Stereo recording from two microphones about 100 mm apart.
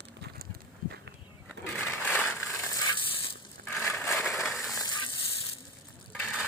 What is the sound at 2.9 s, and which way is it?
Crushing, 60° left (ahead or behind).